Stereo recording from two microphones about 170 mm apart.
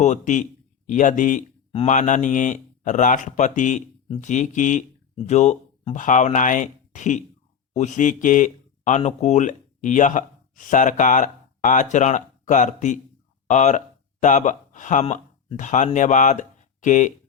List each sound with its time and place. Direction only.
0.0 s speech: 45° left (ahead or behind)